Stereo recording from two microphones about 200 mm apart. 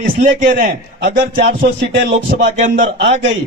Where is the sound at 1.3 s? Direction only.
55° right (ahead or behind).